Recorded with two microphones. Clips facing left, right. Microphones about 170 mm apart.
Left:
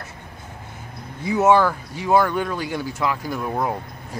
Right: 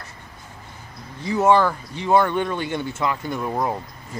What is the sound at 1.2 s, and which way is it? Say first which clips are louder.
Speech: left 1 dB; 10° left (ahead or behind).